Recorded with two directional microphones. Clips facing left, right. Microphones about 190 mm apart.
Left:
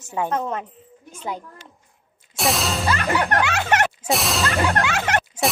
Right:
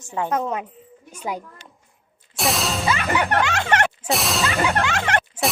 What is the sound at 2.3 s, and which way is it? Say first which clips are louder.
Music: left 1 dB; centre (ahead or behind).